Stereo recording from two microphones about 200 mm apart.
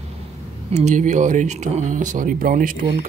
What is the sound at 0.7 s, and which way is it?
Speech, 35° right (ahead or behind).